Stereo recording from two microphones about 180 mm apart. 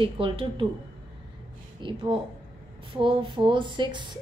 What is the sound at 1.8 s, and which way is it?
A woman's voice, 25° right (ahead or behind).